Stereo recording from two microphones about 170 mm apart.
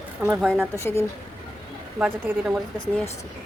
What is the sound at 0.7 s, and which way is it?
Speech, 15° left (ahead or behind).